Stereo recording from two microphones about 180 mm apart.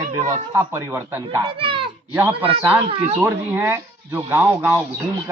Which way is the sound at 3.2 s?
15° right (ahead or behind).